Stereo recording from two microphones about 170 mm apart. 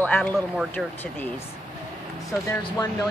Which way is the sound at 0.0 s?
10° left (ahead or behind).